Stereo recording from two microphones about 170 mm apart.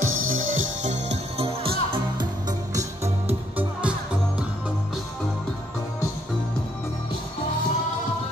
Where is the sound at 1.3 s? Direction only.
35° right (ahead or behind).